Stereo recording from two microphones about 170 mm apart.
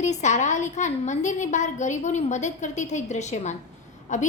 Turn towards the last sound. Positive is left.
turn(degrees=45)  # may be behind; listen again after turning